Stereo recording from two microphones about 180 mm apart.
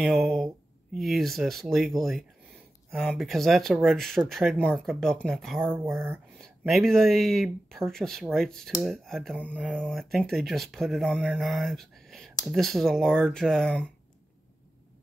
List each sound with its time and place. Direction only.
0.0 s speech: centre (ahead or behind)
5.7 s speech: 15° right (ahead or behind)
6.3 s speech: centre (ahead or behind)